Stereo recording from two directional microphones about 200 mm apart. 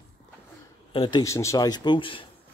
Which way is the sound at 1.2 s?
15° left (ahead or behind).